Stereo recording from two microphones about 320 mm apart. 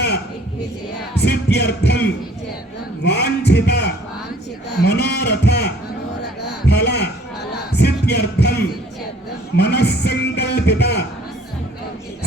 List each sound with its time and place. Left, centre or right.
1.2 s music: left
3.0 s a sound: left
6.4 s heart sounds: left
7.7 s music: left